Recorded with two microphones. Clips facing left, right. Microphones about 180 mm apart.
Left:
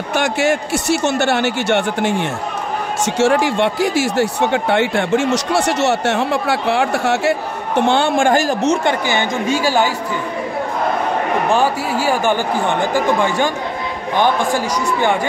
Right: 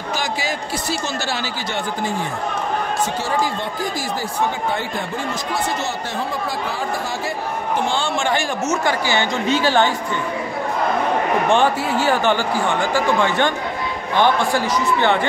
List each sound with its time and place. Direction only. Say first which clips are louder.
0.1 s speech: left 8 dB; 70° left (ahead or behind); by 8.7 s 40° left (ahead or behind)
8.8 s speech: left 2 dB; 15° left (ahead or behind)
11.5 s speech: even; 10° left (ahead or behind)